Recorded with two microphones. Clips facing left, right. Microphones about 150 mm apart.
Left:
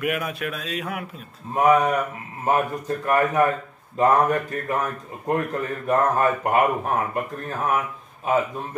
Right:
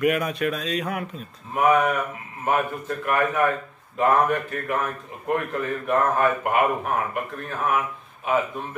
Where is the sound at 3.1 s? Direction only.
40° left (ahead or behind).